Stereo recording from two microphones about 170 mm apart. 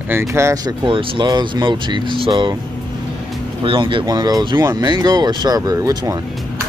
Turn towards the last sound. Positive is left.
turn(degrees=-20)  # may be behind; listen again after turning